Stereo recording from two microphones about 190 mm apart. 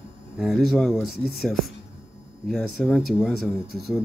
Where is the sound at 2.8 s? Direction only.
Centre (ahead or behind).